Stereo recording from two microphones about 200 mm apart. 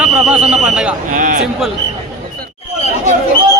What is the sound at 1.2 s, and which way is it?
Speech, 40° right (ahead or behind).